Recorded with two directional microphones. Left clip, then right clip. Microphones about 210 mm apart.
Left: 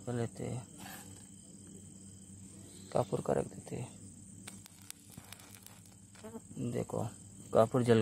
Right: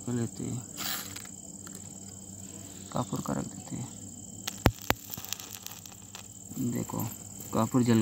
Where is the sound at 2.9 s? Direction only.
45° left (ahead or behind).